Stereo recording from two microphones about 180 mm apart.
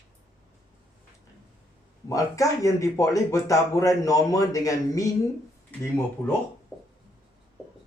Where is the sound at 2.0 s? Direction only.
20° left (ahead or behind).